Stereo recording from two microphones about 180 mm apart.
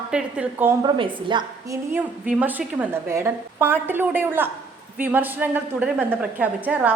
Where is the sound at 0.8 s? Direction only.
25° right (ahead or behind).